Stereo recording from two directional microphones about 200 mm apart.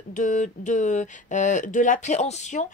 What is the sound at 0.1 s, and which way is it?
Speech, 40° left (ahead or behind).